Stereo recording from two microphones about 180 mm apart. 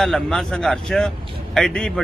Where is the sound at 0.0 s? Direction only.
Centre (ahead or behind).